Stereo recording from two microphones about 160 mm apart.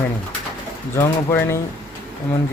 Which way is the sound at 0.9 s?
15° left (ahead or behind).